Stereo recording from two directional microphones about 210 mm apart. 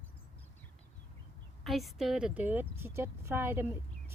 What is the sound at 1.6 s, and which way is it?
Speech, centre (ahead or behind).